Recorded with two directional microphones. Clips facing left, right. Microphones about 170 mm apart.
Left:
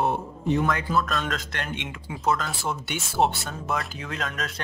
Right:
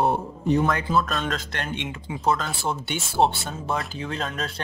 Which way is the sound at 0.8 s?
25° right (ahead or behind).